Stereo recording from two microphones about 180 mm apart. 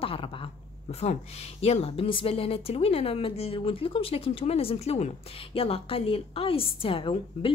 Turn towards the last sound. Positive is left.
turn(degrees=30)  # may be behind; listen again after turning